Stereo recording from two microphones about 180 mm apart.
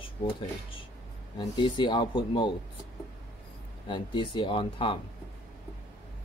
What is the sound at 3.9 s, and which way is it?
Speech, 25° left (ahead or behind).